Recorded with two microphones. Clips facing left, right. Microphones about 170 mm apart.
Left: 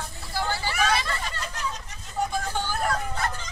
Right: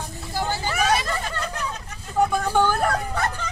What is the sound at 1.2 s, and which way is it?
Hubbub, 55° right (ahead or behind).